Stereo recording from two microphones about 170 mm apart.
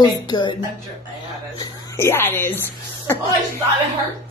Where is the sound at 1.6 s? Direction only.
15° left (ahead or behind).